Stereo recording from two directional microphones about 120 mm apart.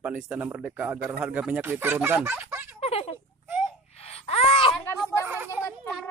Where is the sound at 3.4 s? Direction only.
15° right (ahead or behind).